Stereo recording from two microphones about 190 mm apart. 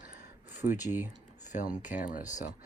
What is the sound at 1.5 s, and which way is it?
Speech, 40° left (ahead or behind).